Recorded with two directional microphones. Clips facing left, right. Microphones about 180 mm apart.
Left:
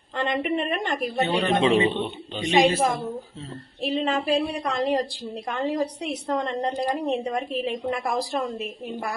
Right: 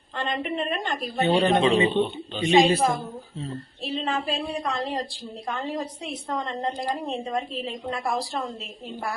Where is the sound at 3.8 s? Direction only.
15° left (ahead or behind).